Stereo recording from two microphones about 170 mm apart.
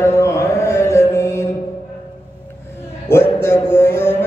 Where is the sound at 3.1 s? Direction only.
15° left (ahead or behind).